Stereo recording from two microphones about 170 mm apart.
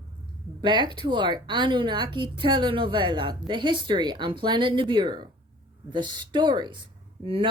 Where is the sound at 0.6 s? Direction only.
25° right (ahead or behind).